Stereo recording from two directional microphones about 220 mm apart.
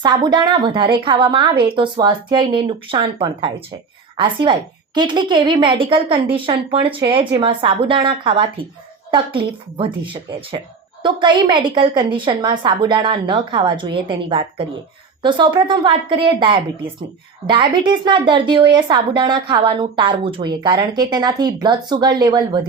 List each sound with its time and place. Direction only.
0.0 s a woman's voice: 20° right (ahead or behind)